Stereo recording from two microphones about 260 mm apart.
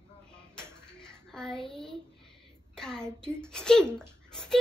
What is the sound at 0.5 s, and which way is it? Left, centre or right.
Dishes, centre.